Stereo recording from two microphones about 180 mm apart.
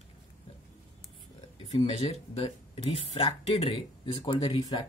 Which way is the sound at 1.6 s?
35° left (ahead or behind).